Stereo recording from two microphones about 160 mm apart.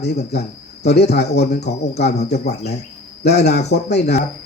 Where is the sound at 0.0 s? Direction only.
90° left.